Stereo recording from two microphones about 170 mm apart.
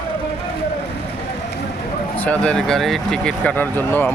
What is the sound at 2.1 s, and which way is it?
Speech, 10° left (ahead or behind).